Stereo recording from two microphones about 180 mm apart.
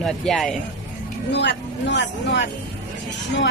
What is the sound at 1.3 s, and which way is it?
Speech, 70° left (ahead or behind).